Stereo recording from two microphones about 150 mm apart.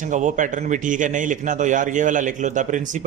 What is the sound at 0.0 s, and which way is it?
A man's voice, 55° right (ahead or behind).